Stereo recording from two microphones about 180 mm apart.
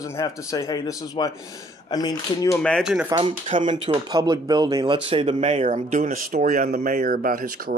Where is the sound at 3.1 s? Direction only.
30° right (ahead or behind).